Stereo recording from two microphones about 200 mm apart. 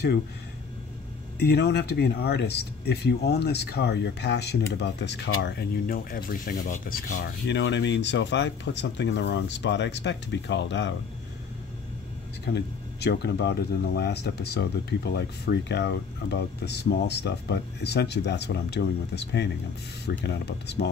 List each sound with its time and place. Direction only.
1.4 s speech: 55° left (ahead or behind)
7.4 s speech: 60° left (ahead or behind)
12.4 s speech: 55° left (ahead or behind)